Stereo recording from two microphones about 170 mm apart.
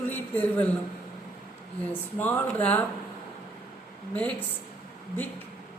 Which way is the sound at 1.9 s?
10° left (ahead or behind).